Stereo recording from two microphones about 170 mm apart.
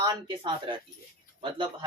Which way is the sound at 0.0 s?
25° right (ahead or behind).